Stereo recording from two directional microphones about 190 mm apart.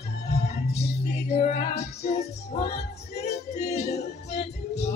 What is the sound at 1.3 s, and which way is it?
Music, 35° left (ahead or behind).